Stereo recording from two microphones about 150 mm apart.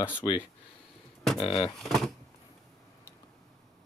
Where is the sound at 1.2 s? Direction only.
Centre (ahead or behind).